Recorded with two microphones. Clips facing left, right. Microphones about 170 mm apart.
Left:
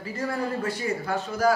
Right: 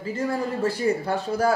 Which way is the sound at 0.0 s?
30° right (ahead or behind).